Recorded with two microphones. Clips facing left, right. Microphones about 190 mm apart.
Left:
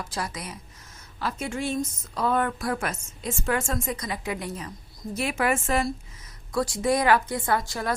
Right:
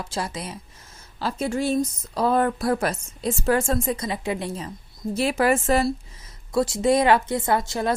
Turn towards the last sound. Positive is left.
turn(degrees=-25)  # may be behind; listen again after turning